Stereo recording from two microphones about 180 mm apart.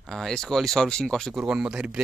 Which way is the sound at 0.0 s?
5° left (ahead or behind).